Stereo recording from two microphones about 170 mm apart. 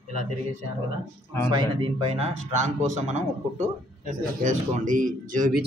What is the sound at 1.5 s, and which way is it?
Speech, 25° right (ahead or behind).